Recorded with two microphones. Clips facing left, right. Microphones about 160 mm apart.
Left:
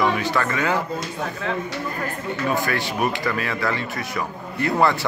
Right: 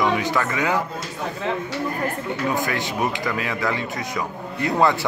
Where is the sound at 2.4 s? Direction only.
20° right (ahead or behind).